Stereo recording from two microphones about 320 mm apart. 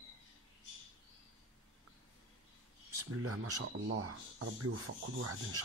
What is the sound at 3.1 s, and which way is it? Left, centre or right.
Speech, right.